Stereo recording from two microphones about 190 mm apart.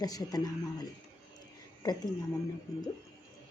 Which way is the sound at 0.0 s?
20° left (ahead or behind).